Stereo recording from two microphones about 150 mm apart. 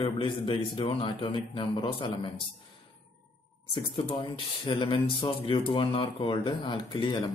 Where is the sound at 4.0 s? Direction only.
35° left (ahead or behind).